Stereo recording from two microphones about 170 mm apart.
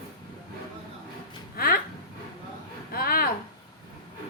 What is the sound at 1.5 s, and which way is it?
Speech, 60° left (ahead or behind).